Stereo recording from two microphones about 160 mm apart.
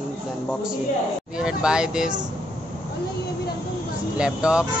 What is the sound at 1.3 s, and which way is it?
Speech, 5° right (ahead or behind).